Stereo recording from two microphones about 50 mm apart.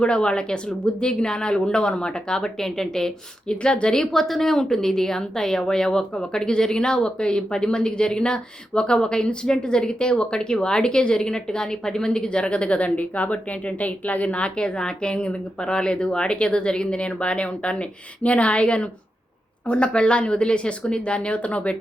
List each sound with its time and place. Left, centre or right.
0.0 s a woman's voice: centre